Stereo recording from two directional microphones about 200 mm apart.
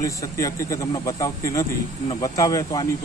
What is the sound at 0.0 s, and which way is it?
Speech, 15° left (ahead or behind).